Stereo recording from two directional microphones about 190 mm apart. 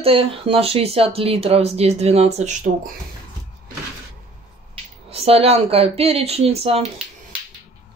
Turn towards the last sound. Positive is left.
turn(degrees=-30)  # may be behind; listen again after turning